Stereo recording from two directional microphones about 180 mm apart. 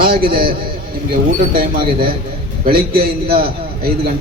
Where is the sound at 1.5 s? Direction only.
55° right (ahead or behind).